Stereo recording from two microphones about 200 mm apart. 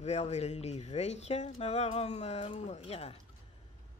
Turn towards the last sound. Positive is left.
turn(degrees=30)  # may be behind; listen again after turning